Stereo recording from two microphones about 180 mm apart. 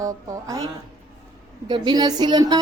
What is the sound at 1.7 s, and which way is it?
Speech, 25° right (ahead or behind).